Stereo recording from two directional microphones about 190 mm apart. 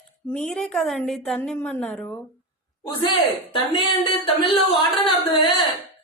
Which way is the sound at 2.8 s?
25° left (ahead or behind).